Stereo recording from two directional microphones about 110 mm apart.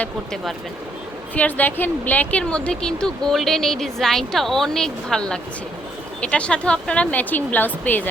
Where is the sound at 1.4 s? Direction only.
15° left (ahead or behind).